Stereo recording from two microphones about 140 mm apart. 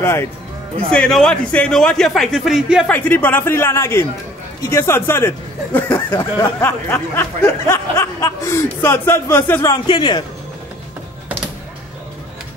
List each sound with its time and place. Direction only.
0.0 s speech: 15° left (ahead or behind)
0.9 s speech: 5° left (ahead or behind)
2.9 s speech: 10° left (ahead or behind)
5.9 s a sound: 25° left (ahead or behind)
9.7 s speech: 35° left (ahead or behind)